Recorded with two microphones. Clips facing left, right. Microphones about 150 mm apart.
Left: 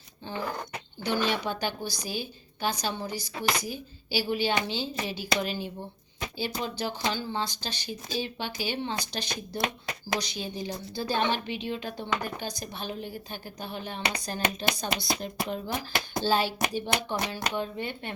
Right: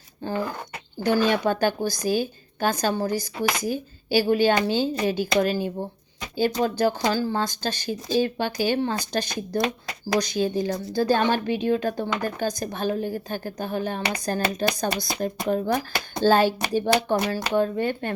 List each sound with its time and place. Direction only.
0.9 s a woman's voice: 45° right (ahead or behind)